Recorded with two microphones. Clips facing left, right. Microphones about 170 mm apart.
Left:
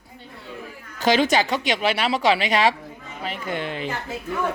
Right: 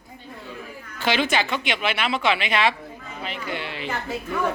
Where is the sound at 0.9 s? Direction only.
40° left (ahead or behind).